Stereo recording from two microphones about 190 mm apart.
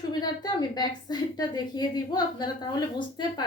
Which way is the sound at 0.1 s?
20° left (ahead or behind).